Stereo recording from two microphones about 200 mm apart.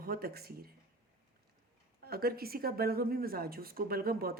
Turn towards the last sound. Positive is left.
turn(degrees=-50)  # may be behind; listen again after turning